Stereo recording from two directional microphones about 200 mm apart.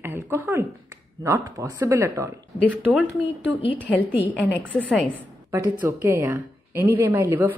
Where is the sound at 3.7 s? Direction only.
5° left (ahead or behind).